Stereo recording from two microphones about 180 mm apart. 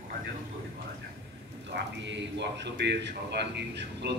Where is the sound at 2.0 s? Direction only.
75° right (ahead or behind).